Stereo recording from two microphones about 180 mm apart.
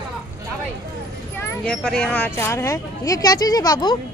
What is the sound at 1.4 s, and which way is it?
Speech, 5° left (ahead or behind).